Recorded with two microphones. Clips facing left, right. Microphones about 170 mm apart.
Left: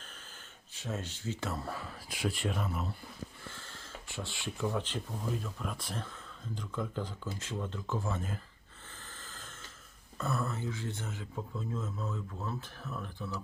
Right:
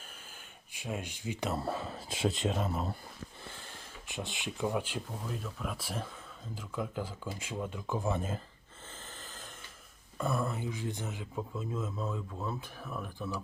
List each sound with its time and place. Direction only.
0.7 s speech: 10° right (ahead or behind)
1.5 s speech: 25° right (ahead or behind)
2.6 s speech: 40° right (ahead or behind)
3.5 s a sound: 20° right (ahead or behind)
5.3 s speech: centre (ahead or behind); by 8.4 s 20° right (ahead or behind)
9.2 s snort: 20° right (ahead or behind)
10.2 s speech: 10° right (ahead or behind)